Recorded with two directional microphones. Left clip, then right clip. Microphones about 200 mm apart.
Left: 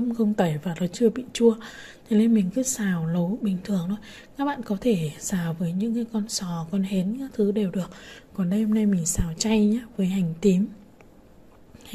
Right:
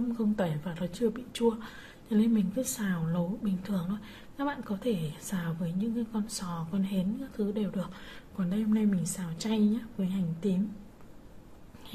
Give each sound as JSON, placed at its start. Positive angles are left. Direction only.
{"t": 0.2, "sound": "a woman's voice", "side_deg": 30}